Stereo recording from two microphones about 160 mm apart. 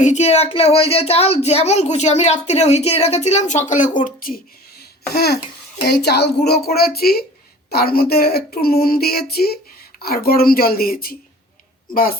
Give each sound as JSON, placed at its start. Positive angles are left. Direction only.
{"t": 0.0, "sound": "speech", "side_deg": 45}
{"t": 4.0, "sound": "speech", "side_deg": 65}
{"t": 5.1, "sound": "a woman's voice", "side_deg": 85}